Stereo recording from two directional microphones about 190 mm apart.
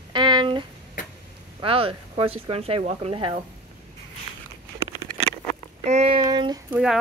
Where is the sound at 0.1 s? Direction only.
25° right (ahead or behind).